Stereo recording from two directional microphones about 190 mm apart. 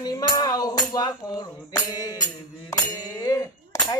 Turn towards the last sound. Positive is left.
turn(degrees=15)  # may be behind; listen again after turning